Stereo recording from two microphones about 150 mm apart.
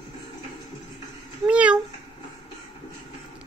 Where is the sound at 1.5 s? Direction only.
10° right (ahead or behind).